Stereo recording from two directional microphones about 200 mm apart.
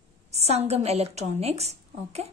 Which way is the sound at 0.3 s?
30° right (ahead or behind).